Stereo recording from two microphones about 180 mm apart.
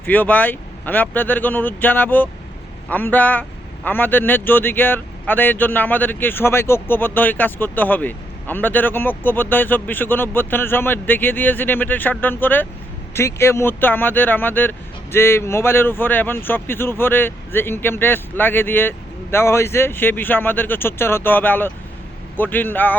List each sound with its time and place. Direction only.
0.0 s a man's voice: 10° left (ahead or behind)